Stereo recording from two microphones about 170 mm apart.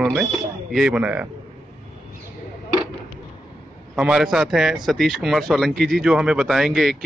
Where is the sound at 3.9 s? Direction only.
5° right (ahead or behind).